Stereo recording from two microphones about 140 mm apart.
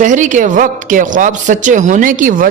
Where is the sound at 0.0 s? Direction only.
65° right (ahead or behind).